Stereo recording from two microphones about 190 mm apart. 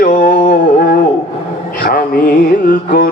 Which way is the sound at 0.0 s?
45° left (ahead or behind).